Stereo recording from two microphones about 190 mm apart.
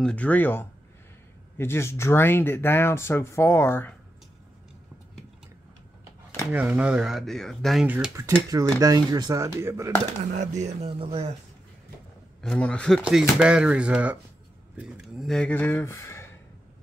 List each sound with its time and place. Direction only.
0.0 s speech: 5° left (ahead or behind)
6.5 s speech: 10° right (ahead or behind)
10.3 s speech: 40° right (ahead or behind)
12.4 s speech: 5° left (ahead or behind)